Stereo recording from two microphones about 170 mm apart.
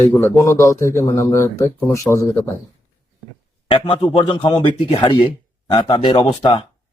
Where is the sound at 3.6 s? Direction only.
30° left (ahead or behind).